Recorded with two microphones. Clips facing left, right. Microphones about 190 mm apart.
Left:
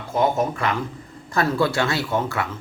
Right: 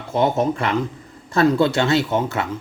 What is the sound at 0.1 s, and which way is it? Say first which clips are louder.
Speech: right 2 dB; 25° right (ahead or behind).